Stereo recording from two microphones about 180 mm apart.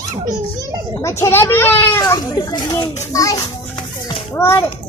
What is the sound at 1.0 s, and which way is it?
A child's voice, 15° left (ahead or behind).